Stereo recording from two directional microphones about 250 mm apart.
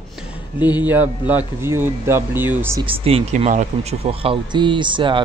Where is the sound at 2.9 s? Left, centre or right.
Right.